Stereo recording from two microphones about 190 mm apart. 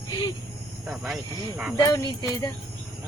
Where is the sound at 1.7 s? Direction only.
20° left (ahead or behind).